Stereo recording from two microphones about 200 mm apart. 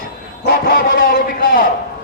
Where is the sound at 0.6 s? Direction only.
45° left (ahead or behind).